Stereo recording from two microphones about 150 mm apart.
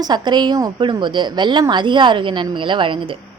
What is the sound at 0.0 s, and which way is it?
A woman's voice, 30° right (ahead or behind).